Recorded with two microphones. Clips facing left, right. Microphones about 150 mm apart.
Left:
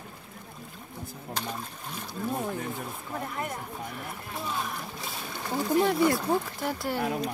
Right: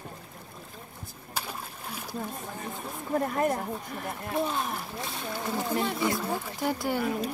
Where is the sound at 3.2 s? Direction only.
40° right (ahead or behind).